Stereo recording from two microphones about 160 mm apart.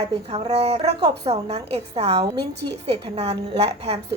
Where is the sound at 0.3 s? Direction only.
40° right (ahead or behind).